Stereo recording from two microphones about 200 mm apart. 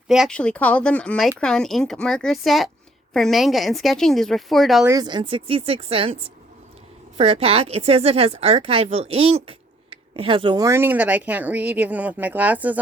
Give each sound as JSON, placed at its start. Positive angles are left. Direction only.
{"t": 0.1, "sound": "a woman's voice", "side_deg": 0}
{"t": 4.9, "sound": "speech", "side_deg": -20}